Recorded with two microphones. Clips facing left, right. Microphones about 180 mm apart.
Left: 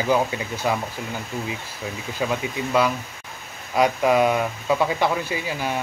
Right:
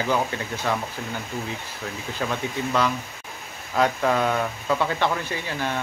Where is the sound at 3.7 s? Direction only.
15° left (ahead or behind).